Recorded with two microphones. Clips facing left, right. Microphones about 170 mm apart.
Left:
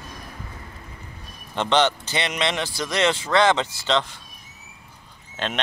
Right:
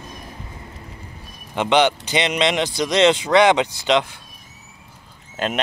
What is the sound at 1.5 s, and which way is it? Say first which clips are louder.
Speech: right 3 dB; 15° right (ahead or behind).